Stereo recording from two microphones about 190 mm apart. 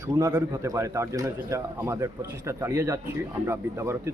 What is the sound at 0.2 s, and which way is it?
A man's voice, 15° right (ahead or behind).